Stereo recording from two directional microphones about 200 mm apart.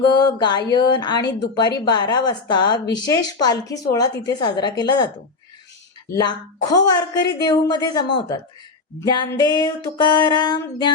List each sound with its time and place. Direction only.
0.0 s speech: 20° left (ahead or behind)
6.1 s speech: 20° left (ahead or behind)
9.0 s speech: 20° left (ahead or behind)